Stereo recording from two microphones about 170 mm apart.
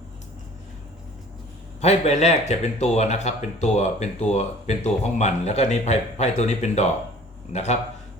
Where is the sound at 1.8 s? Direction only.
40° left (ahead or behind).